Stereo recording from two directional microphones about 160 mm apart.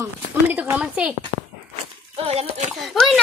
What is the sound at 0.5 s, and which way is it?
Speech, 10° right (ahead or behind).